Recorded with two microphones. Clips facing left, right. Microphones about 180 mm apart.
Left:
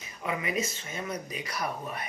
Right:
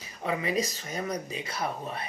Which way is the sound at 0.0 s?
35° right (ahead or behind).